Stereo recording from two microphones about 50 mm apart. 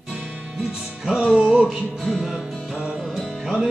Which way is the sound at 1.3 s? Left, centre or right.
Centre.